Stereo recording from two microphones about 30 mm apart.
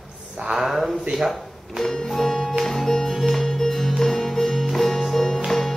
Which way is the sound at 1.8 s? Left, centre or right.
Left.